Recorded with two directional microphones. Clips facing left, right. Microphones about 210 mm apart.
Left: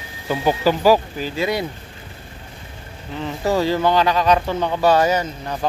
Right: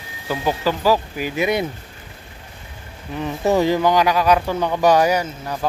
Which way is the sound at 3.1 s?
15° right (ahead or behind).